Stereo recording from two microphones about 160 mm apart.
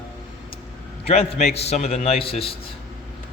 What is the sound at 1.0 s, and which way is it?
A man's voice, 40° left (ahead or behind).